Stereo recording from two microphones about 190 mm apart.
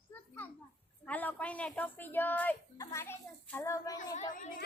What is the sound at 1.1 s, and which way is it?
A woman's voice, 10° left (ahead or behind).